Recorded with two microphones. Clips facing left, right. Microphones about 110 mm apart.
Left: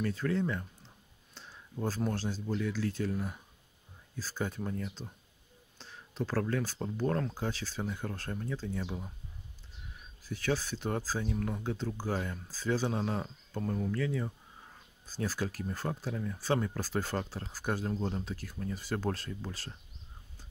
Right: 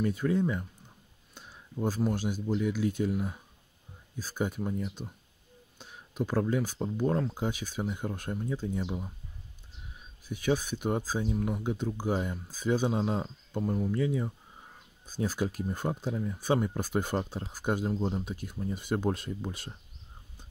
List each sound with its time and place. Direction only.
0.0 s speech: 15° right (ahead or behind)
10.2 s speech: 15° right (ahead or behind)